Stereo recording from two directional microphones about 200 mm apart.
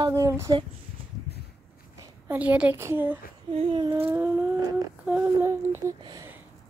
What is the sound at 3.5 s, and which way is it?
Speech, 30° right (ahead or behind).